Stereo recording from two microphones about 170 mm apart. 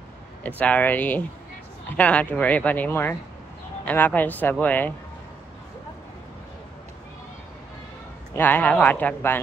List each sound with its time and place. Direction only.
0.4 s speech: 10° left (ahead or behind)
8.3 s speech: 10° left (ahead or behind)